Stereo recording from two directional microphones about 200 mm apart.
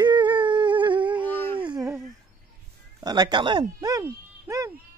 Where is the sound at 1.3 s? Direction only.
10° left (ahead or behind).